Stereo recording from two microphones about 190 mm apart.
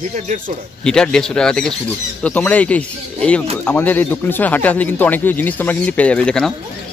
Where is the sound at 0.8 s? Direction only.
5° left (ahead or behind).